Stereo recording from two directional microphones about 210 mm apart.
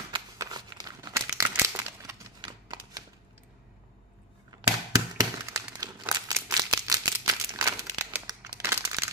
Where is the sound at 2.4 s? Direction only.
20° right (ahead or behind).